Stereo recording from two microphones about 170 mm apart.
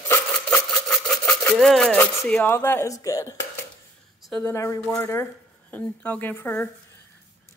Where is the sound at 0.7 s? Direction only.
5° left (ahead or behind).